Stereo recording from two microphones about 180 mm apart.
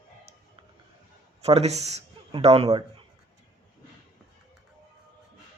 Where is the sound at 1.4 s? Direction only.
35° right (ahead or behind).